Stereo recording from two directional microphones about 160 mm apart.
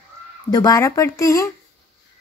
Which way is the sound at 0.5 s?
20° left (ahead or behind).